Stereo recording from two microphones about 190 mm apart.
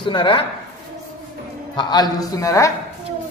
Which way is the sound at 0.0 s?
25° left (ahead or behind).